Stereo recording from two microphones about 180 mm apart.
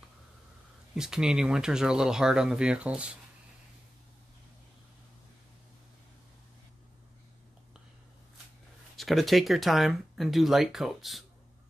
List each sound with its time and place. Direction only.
0.9 s speech: 5° right (ahead or behind)
8.9 s speech: centre (ahead or behind)